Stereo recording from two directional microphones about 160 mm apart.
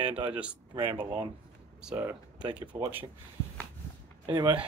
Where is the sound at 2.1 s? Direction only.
30° right (ahead or behind).